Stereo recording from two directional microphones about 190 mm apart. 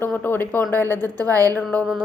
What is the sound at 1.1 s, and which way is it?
Speech, 20° right (ahead or behind).